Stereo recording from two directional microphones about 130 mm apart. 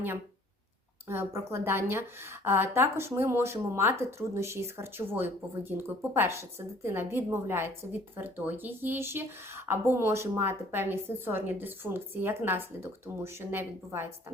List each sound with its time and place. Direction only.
1.0 s a woman's voice: 20° right (ahead or behind)